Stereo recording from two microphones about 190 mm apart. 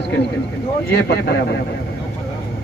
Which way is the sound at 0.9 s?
60° left (ahead or behind).